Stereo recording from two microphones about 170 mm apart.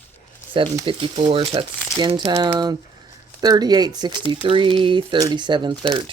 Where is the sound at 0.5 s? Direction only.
25° right (ahead or behind).